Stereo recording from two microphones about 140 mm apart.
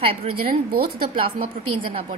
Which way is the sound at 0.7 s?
90° right.